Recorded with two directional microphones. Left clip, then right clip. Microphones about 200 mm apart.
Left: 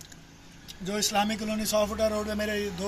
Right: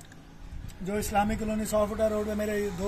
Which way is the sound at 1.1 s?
10° left (ahead or behind).